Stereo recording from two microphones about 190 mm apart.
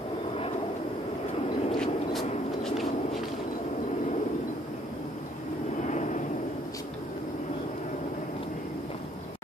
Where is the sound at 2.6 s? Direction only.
Centre (ahead or behind).